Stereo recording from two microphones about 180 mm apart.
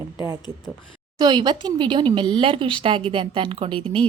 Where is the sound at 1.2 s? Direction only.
25° right (ahead or behind).